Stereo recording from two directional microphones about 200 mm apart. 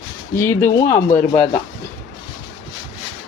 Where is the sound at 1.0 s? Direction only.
35° left (ahead or behind).